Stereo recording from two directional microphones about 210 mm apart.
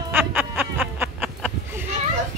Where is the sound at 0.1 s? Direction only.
10° right (ahead or behind).